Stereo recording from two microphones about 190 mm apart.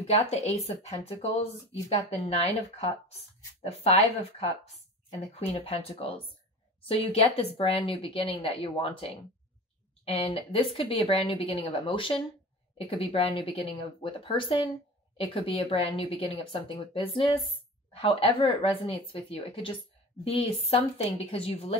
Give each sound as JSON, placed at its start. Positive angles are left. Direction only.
{"t": 0.0, "sound": "speech", "side_deg": 35}
{"t": 5.5, "sound": "speech", "side_deg": 30}